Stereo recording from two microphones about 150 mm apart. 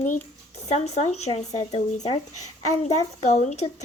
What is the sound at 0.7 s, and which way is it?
Speech, 45° left (ahead or behind).